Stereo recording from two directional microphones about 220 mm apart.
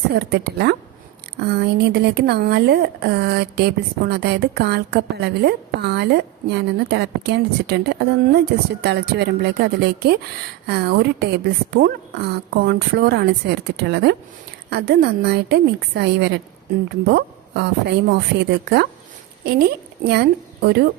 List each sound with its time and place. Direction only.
0.1 s a woman's voice: 45° right (ahead or behind)